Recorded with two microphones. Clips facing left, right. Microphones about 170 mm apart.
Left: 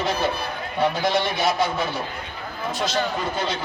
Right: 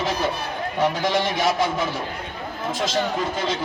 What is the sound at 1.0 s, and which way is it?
Speech, 90° right.